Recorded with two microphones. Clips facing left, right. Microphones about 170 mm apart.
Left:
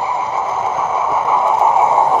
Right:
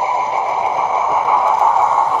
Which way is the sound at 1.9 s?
40° left (ahead or behind).